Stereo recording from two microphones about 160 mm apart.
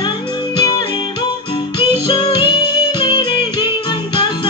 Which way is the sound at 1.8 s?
30° left (ahead or behind).